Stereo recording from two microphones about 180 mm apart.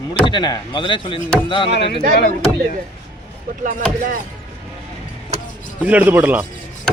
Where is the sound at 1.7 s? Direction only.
70° left (ahead or behind).